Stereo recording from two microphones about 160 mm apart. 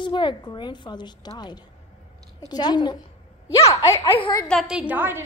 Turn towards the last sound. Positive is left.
turn(degrees=-10)  # may be behind; listen again after turning